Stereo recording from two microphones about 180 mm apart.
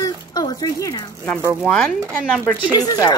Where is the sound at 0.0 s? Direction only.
20° left (ahead or behind).